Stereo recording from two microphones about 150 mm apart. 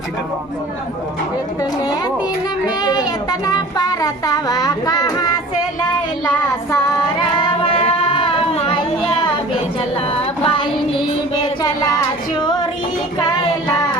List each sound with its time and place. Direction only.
2.6 s child singing: 25° left (ahead or behind)
7.2 s child singing: 35° left (ahead or behind)
10.1 s a sound: 35° left (ahead or behind)
11.6 s child singing: 25° left (ahead or behind)